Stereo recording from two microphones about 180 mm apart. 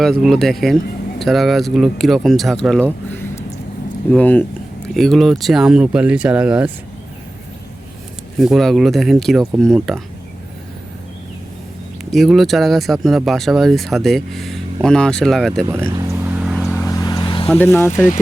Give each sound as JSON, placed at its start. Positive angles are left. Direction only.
{"t": 0.0, "sound": "speech", "side_deg": 0}
{"t": 8.4, "sound": "speech", "side_deg": 0}
{"t": 12.1, "sound": "speech", "side_deg": 0}
{"t": 15.6, "sound": "vehicle", "side_deg": -15}
{"t": 16.8, "sound": "vehicle", "side_deg": 20}
{"t": 17.5, "sound": "speech", "side_deg": 15}